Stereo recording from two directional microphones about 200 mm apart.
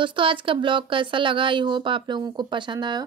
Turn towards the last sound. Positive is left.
turn(degrees=-20)  # may be behind; listen again after turning